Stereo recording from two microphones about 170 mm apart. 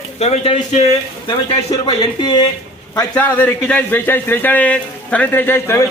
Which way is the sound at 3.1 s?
10° left (ahead or behind).